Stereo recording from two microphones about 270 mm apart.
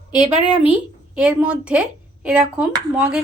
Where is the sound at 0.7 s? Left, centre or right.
Centre.